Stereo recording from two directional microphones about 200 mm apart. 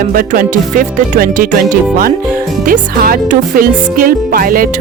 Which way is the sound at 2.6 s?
40° right (ahead or behind).